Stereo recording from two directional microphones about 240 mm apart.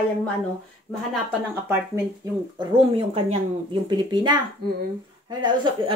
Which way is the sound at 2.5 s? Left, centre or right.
Right.